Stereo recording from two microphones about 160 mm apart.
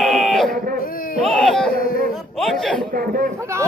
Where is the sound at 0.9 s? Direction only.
65° left (ahead or behind).